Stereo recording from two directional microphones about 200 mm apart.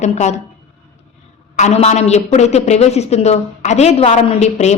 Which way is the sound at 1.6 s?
35° left (ahead or behind).